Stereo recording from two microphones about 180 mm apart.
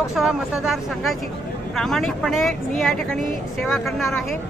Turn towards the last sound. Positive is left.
turn(degrees=0)  # may be behind; listen again after turning